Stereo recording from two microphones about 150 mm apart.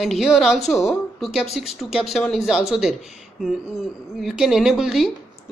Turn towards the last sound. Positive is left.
turn(degrees=0)  # may be behind; listen again after turning